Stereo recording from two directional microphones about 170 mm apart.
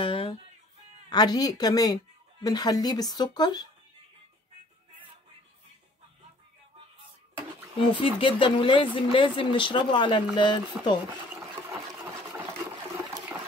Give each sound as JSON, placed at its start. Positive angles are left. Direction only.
{"t": 0.0, "sound": "music", "side_deg": 30}
{"t": 1.1, "sound": "speech", "side_deg": 25}
{"t": 8.0, "sound": "speech", "side_deg": 30}
{"t": 11.3, "sound": "sewing machine", "side_deg": -15}